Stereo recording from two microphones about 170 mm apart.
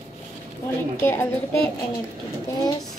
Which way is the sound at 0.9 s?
15° left (ahead or behind).